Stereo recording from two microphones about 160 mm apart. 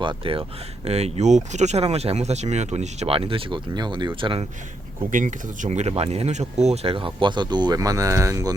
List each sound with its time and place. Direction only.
0.0 s speech: 30° right (ahead or behind)
5.1 s speech: 50° right (ahead or behind); by 8.5 s 20° right (ahead or behind)